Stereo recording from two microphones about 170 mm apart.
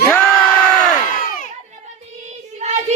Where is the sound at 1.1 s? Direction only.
55° left (ahead or behind).